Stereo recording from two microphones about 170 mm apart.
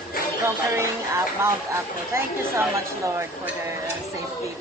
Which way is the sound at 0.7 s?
15° right (ahead or behind).